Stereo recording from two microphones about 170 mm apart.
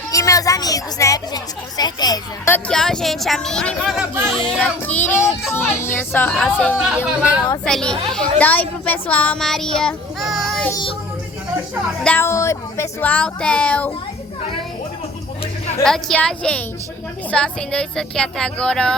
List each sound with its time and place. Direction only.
0.1 s speech: 20° left (ahead or behind)
2.5 s speech: 5° left (ahead or behind)
6.8 s speech: 5° right (ahead or behind)
7.6 s speech: 5° left (ahead or behind)
12.0 s speech: 15° left (ahead or behind)
15.8 s speech: 5° left (ahead or behind)